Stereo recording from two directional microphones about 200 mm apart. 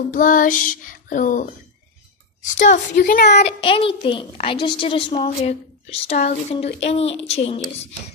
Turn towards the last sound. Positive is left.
turn(degrees=30)  # may be behind; listen again after turning